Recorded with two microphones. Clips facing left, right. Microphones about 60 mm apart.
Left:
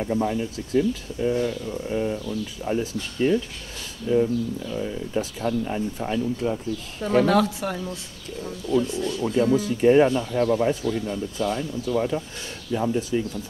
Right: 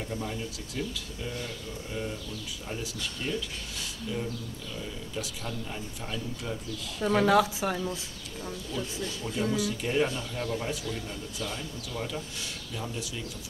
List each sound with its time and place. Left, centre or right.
0.1 s speech: left
1.4 s speech: left
2.2 s speech: left
7.2 s speech: centre
9.2 s speech: left